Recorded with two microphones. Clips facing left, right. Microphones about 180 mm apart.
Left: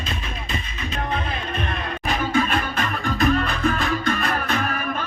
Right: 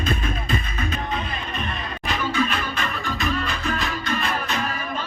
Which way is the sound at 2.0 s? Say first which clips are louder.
Left 2 dB; 50° left (ahead or behind).